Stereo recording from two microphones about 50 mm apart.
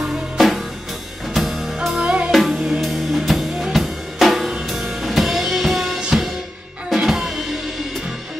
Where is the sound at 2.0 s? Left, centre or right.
Right.